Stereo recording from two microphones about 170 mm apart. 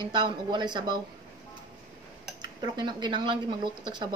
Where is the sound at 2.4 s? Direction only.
25° right (ahead or behind).